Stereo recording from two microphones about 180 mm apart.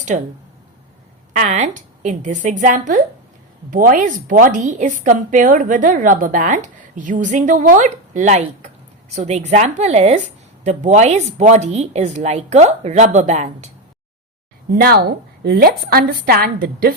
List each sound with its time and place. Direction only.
1.3 s speech: 40° right (ahead or behind)
14.8 s a woman's voice: 60° right (ahead or behind)